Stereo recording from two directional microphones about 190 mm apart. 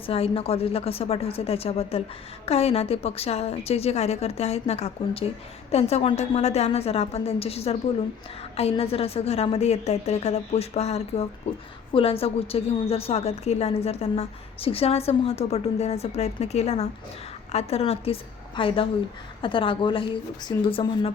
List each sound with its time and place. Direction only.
0.0 s a woman's voice: 30° left (ahead or behind)